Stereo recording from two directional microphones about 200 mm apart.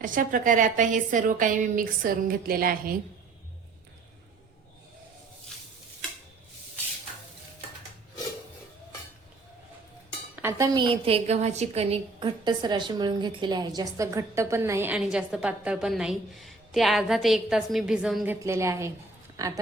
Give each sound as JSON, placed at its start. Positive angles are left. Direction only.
{"t": 0.0, "sound": "a woman's voice", "side_deg": -40}
{"t": 10.3, "sound": "dishes", "side_deg": -10}
{"t": 10.8, "sound": "a woman's voice", "side_deg": -25}
{"t": 18.3, "sound": "a woman's voice", "side_deg": -15}